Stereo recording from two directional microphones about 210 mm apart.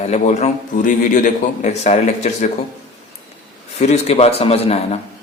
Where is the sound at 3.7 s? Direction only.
30° left (ahead or behind).